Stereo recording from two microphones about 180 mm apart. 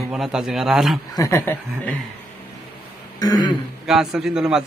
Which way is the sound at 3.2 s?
20° left (ahead or behind).